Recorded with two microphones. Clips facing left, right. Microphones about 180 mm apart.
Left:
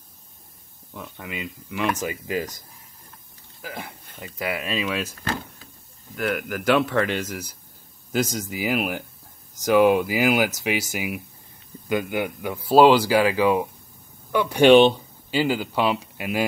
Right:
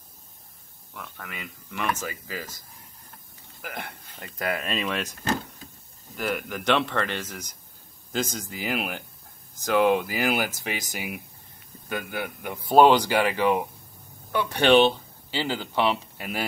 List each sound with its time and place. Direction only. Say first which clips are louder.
1.0 s speech: left 7 dB; 15° left (ahead or behind)
3.7 s speech: left 1 dB; 5° left (ahead or behind)
6.1 s speech: left 3 dB; centre (ahead or behind)